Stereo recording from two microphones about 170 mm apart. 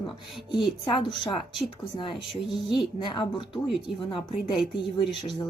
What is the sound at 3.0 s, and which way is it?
Speech, 30° left (ahead or behind).